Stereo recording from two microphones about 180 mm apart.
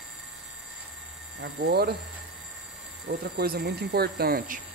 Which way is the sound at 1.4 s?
60° right (ahead or behind).